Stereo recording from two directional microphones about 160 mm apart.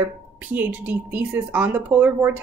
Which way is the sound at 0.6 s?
10° right (ahead or behind).